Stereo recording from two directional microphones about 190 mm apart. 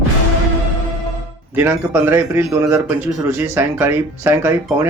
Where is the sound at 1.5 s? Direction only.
10° right (ahead or behind).